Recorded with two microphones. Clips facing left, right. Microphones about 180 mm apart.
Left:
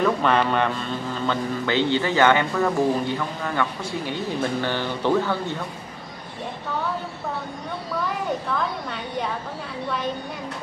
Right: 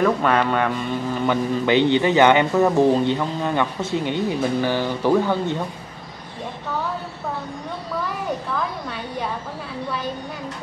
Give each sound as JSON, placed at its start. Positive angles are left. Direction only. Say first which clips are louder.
{"t": 0.0, "sound": "a man's voice", "louder": "right 2 dB", "side_deg": -5}